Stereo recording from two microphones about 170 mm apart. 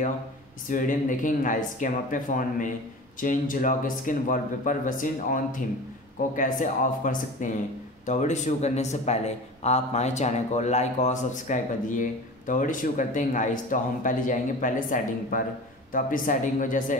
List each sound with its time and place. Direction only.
0.7 s speech: 50° left (ahead or behind)